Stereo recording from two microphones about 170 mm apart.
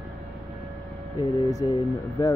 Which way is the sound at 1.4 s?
20° left (ahead or behind).